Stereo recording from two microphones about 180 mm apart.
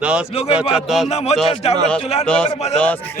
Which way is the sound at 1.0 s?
35° left (ahead or behind).